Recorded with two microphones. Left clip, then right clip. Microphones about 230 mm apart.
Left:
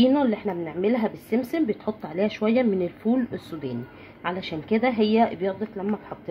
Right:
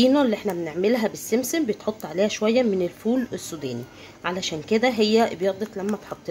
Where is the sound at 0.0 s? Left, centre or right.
Centre.